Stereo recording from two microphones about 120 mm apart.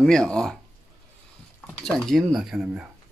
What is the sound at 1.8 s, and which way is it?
Speech, 5° left (ahead or behind).